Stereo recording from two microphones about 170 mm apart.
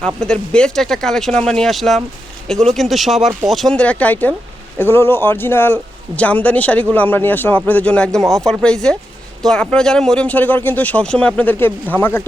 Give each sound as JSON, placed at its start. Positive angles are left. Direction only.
{"t": 0.2, "sound": "speech", "side_deg": 5}